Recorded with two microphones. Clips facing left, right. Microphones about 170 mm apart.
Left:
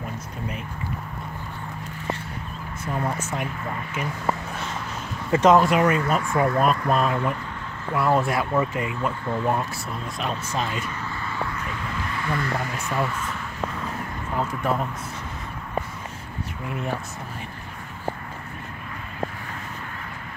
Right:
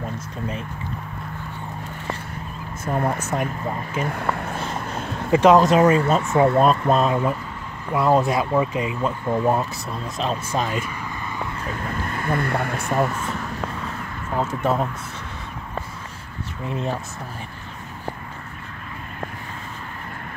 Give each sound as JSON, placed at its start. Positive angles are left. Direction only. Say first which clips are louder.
{"t": 2.8, "sound": "speech", "louder": "right 4 dB", "side_deg": -50}
{"t": 4.0, "sound": "speech", "louder": "right 2 dB", "side_deg": -60}
{"t": 4.6, "sound": "a sound", "louder": "right 4 dB", "side_deg": -35}
{"t": 5.3, "sound": "speech", "louder": "right 3 dB", "side_deg": -15}
{"t": 5.8, "sound": "speech", "louder": "right 4 dB", "side_deg": -30}
{"t": 10.5, "sound": "speech", "louder": "right 3 dB", "side_deg": -45}
{"t": 11.6, "sound": "vehicle", "louder": "right 3 dB", "side_deg": -50}
{"t": 14.4, "sound": "speech", "louder": "right 3 dB", "side_deg": -25}
{"t": 16.6, "sound": "speech", "louder": "right 4 dB", "side_deg": -25}